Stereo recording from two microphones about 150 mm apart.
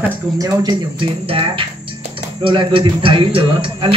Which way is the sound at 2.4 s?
35° right (ahead or behind).